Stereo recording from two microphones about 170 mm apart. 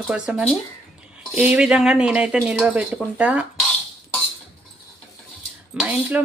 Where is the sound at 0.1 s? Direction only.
5° right (ahead or behind).